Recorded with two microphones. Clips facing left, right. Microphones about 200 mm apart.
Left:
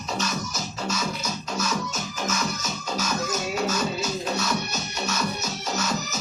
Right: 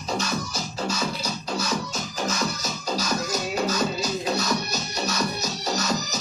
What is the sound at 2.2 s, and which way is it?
Music, 35° right (ahead or behind).